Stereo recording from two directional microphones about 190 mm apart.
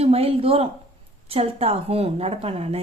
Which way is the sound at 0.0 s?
30° right (ahead or behind).